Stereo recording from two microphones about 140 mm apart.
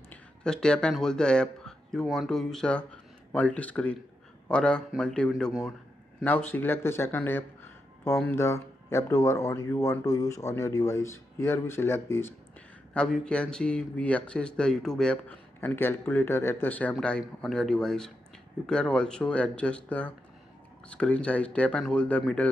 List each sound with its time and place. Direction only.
0.1 s speech: 5° left (ahead or behind)
12.9 s speech: 5° left (ahead or behind)